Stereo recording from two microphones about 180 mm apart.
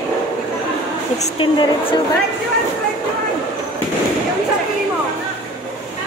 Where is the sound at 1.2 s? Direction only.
30° left (ahead or behind).